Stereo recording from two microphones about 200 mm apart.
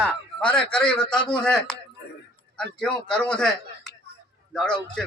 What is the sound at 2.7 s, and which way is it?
Speech, 5° left (ahead or behind).